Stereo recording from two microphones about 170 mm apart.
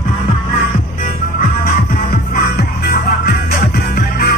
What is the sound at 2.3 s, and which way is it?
Music, 60° left (ahead or behind).